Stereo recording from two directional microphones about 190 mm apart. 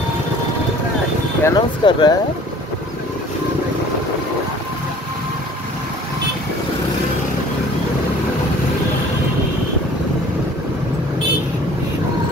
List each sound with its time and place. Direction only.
1.4 s speech: 20° left (ahead or behind)